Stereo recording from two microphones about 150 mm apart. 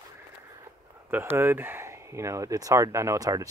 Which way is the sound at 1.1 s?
15° right (ahead or behind).